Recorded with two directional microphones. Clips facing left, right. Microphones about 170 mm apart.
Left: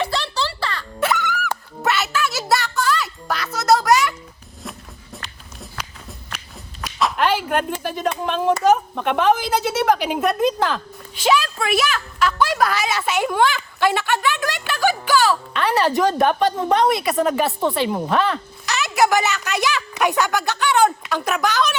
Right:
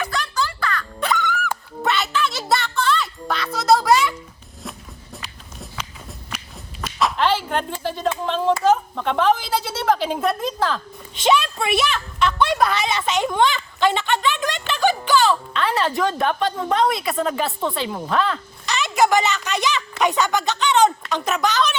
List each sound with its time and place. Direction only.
0.0 s music: 30° left (ahead or behind)
0.9 s a sound: 5° left (ahead or behind)
5.1 s walk: centre (ahead or behind)
7.2 s speech: 10° left (ahead or behind)
11.1 s a woman's voice: 5° left (ahead or behind)
16.6 s a woman's voice: 20° left (ahead or behind)
17.2 s a woman's voice: centre (ahead or behind)